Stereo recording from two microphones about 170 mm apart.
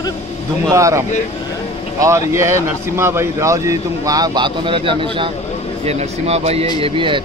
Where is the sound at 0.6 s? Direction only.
20° right (ahead or behind).